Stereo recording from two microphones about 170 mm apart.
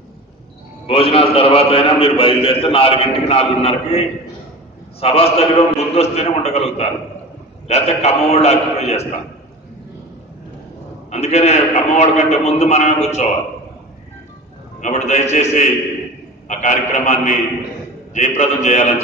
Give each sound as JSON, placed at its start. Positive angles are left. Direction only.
{"t": 0.8, "sound": "a man's voice", "side_deg": 35}
{"t": 5.0, "sound": "a man's voice", "side_deg": 35}
{"t": 11.1, "sound": "a man's voice", "side_deg": 40}
{"t": 14.8, "sound": "a man's voice", "side_deg": 45}